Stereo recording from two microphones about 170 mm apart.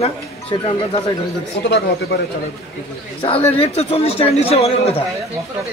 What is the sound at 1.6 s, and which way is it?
Speech, 90° left.